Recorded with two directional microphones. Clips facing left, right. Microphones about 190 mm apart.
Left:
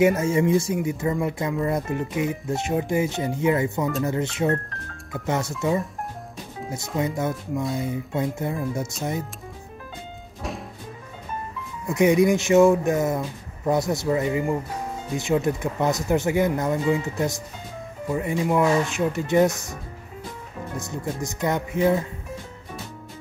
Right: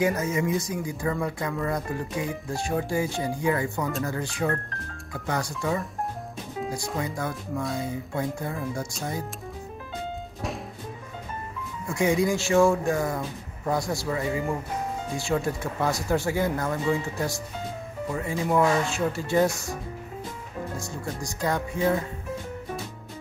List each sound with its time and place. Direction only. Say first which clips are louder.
0.0 s speech: left 6 dB; 25° left (ahead or behind)
7.2 s speech: left 4 dB; 20° left (ahead or behind)
11.9 s speech: left 5 dB; 20° left (ahead or behind)
20.7 s speech: left 3 dB; 20° left (ahead or behind)